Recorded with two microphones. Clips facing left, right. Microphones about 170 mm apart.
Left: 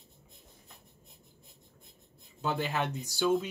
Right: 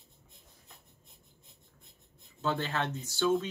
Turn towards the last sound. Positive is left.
turn(degrees=10)  # may be behind; listen again after turning